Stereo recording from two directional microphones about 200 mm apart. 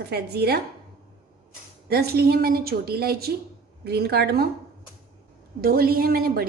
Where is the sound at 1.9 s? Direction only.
50° right (ahead or behind).